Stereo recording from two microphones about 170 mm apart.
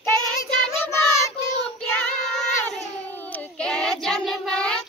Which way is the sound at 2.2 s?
5° left (ahead or behind).